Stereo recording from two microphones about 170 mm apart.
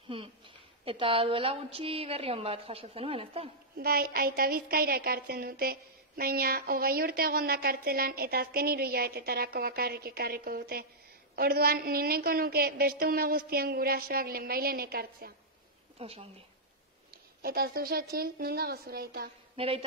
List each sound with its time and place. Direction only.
0.8 s a woman's voice: 30° right (ahead or behind)
3.7 s a woman's voice: 60° right (ahead or behind)
16.0 s a woman's voice: 35° right (ahead or behind)
17.1 s a woman's voice: 65° right (ahead or behind)
19.5 s a woman's voice: 35° right (ahead or behind)